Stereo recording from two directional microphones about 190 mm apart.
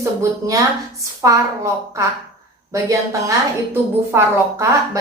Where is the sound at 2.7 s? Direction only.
15° right (ahead or behind).